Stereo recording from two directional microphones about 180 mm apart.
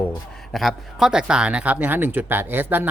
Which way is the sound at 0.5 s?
Centre (ahead or behind).